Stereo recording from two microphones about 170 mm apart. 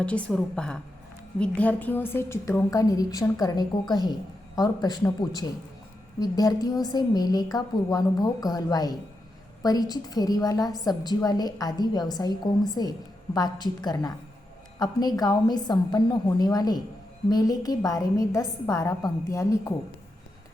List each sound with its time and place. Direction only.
0.0 s a woman's voice: 5° left (ahead or behind)